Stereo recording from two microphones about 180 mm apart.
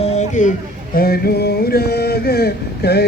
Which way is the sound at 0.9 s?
60° left (ahead or behind).